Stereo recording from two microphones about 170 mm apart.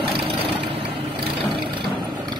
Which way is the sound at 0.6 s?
35° right (ahead or behind).